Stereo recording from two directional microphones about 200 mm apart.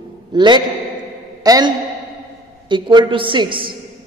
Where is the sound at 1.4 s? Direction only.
20° right (ahead or behind).